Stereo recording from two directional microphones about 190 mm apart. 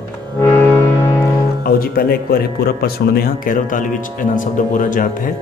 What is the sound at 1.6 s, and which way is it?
Speech, 50° left (ahead or behind).